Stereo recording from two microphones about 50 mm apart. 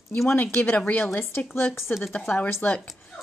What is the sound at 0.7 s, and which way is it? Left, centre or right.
Speech, left.